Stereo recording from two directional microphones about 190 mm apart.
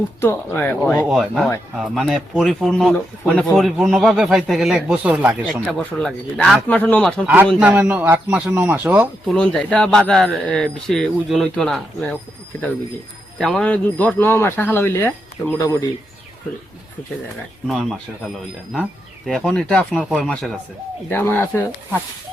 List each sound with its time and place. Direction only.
0.2 s speech: 15° left (ahead or behind)
1.0 s speech: centre (ahead or behind)
5.7 s speech: 5° left (ahead or behind)
7.6 s speech: 10° right (ahead or behind)
9.2 s speech: centre (ahead or behind)
13.4 s speech: 5° left (ahead or behind)
17.7 s speech: centre (ahead or behind)